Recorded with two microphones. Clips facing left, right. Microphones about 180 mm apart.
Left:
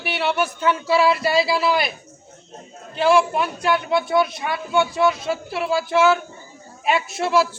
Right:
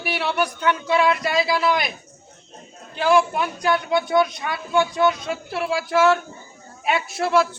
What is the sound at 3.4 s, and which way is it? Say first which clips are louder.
A man's voice: even; 5° left (ahead or behind).